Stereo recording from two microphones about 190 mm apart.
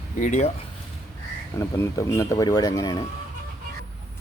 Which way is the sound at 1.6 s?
15° left (ahead or behind).